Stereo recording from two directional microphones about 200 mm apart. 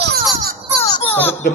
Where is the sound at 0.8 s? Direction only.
20° left (ahead or behind).